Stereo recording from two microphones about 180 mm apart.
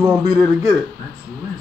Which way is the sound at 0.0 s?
15° right (ahead or behind).